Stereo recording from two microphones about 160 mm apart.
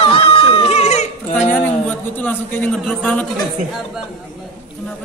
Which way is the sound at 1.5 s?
10° left (ahead or behind).